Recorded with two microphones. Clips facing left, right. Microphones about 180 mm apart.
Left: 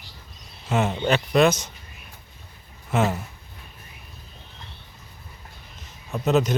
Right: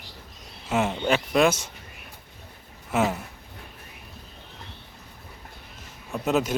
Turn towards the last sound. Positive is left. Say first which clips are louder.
# left 3 dB
turn(degrees=-5)  # may be behind; listen again after turning